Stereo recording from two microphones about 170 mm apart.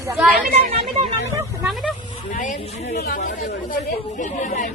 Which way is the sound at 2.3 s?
55° left (ahead or behind).